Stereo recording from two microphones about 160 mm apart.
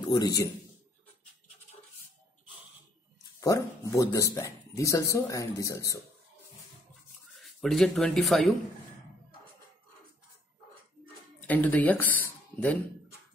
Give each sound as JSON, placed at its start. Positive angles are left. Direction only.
{"t": 0.1, "sound": "speech", "side_deg": 25}
{"t": 3.3, "sound": "speech", "side_deg": 20}
{"t": 7.3, "sound": "speech", "side_deg": 0}
{"t": 11.4, "sound": "speech", "side_deg": 10}